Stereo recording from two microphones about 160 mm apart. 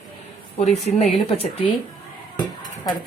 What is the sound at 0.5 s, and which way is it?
Speech, 40° left (ahead or behind).